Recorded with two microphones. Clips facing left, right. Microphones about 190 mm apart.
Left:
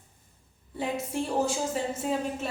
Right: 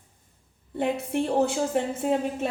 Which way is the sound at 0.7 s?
60° right (ahead or behind).